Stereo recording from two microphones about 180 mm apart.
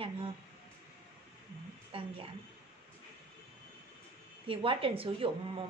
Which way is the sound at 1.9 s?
30° right (ahead or behind).